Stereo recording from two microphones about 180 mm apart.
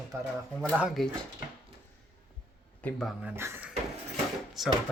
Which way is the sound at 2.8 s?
Centre (ahead or behind).